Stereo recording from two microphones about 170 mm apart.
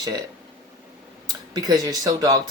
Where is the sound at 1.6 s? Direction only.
25° right (ahead or behind).